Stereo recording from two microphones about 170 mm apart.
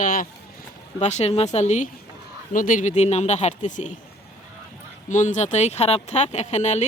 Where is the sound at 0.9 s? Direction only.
40° left (ahead or behind).